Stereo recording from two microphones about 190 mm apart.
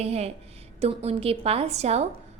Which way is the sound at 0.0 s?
35° right (ahead or behind).